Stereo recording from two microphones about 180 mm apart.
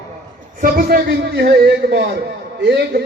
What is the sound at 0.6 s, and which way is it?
A man's voice, 55° right (ahead or behind).